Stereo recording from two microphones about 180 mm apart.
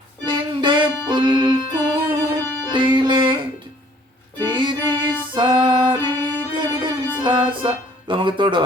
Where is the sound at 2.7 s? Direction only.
25° right (ahead or behind).